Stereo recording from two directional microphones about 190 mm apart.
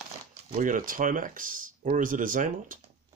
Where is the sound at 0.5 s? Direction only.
45° right (ahead or behind).